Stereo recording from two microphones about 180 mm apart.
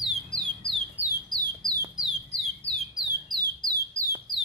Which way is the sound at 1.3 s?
20° right (ahead or behind).